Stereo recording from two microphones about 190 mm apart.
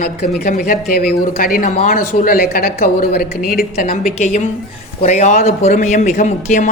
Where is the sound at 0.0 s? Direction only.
55° left (ahead or behind).